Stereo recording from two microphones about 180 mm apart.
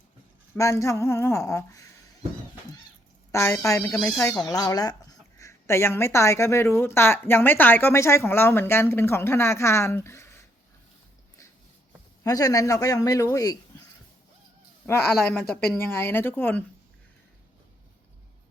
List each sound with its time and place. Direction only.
0.5 s speech: 15° left (ahead or behind)
3.3 s a man's voice: 15° left (ahead or behind)
12.2 s a man's voice: 20° left (ahead or behind)
14.8 s speech: 15° left (ahead or behind)